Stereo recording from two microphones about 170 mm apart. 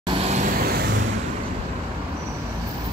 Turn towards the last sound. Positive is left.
turn(degrees=-80)